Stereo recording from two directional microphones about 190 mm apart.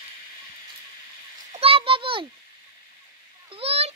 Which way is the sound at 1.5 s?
30° right (ahead or behind).